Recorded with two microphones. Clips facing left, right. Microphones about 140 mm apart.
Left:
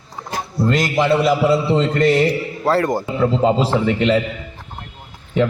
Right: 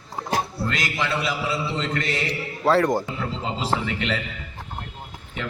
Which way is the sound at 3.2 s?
50° left (ahead or behind).